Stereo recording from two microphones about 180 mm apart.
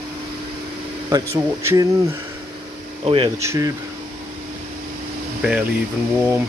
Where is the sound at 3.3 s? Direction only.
15° right (ahead or behind).